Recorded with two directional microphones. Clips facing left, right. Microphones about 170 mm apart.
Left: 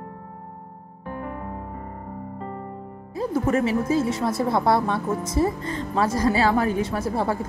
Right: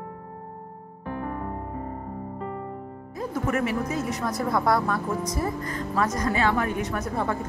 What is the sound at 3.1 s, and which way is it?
Speech, 30° left (ahead or behind).